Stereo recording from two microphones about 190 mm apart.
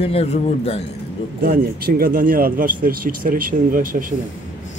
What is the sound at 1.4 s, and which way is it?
Speech, 55° right (ahead or behind).